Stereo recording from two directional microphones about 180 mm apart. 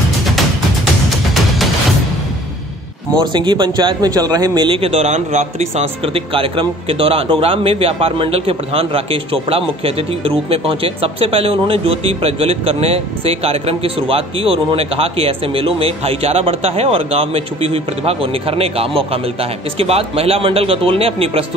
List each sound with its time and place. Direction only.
3.2 s a man's voice: 25° right (ahead or behind)